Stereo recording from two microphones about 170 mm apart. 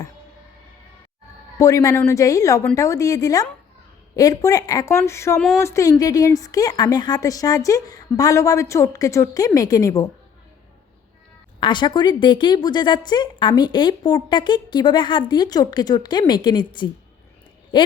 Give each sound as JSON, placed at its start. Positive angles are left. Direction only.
{"t": 1.5, "sound": "speech", "side_deg": 20}
{"t": 11.6, "sound": "speech", "side_deg": 25}